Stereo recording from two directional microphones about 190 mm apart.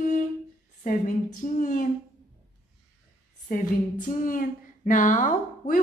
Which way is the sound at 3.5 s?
45° left (ahead or behind).